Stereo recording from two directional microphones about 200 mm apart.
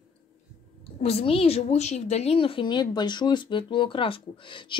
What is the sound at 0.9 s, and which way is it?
A woman's voice, 30° left (ahead or behind).